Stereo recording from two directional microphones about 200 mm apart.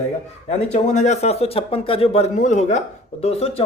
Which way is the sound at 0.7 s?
35° left (ahead or behind).